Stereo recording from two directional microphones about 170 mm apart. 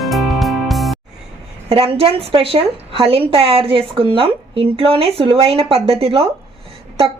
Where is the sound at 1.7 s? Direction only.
35° right (ahead or behind).